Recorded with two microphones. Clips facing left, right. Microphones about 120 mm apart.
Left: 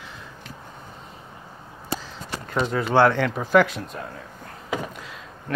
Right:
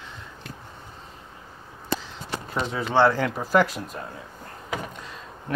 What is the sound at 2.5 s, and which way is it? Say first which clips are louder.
Speech: left 3 dB; 5° right (ahead or behind).